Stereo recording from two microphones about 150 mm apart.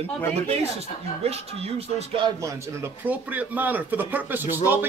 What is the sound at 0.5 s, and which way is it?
Speech, 45° right (ahead or behind).